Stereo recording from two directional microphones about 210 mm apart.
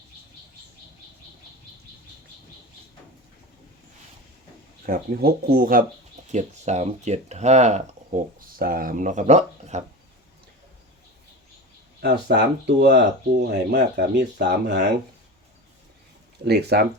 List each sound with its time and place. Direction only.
4.9 s speech: 45° right (ahead or behind)
6.2 s speech: 35° right (ahead or behind)
12.0 s speech: 50° right (ahead or behind)
16.4 s speech: 50° right (ahead or behind)